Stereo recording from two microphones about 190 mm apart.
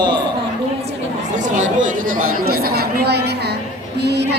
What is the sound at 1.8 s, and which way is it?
Speech, 45° right (ahead or behind).